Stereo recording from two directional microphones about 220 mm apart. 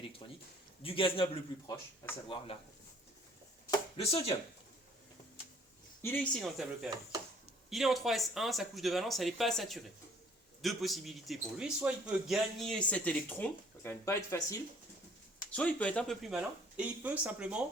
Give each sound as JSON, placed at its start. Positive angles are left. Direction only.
{"t": 0.8, "sound": "a man's voice", "side_deg": 25}
{"t": 3.9, "sound": "a man's voice", "side_deg": 25}
{"t": 6.0, "sound": "speech", "side_deg": 10}